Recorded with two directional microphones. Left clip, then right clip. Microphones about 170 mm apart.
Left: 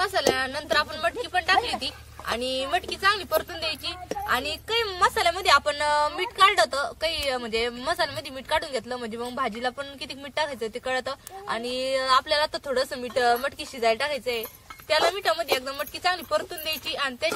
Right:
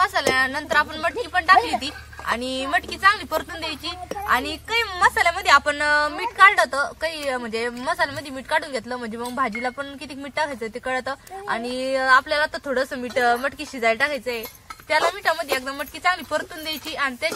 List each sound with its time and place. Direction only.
0.0 s a woman's voice: 40° left (ahead or behind)
14.9 s a woman's voice: 30° left (ahead or behind)